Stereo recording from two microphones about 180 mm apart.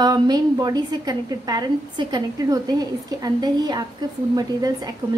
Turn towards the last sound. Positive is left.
turn(degrees=-20)  # may be behind; listen again after turning